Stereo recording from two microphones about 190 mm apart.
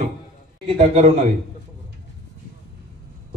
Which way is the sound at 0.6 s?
30° right (ahead or behind).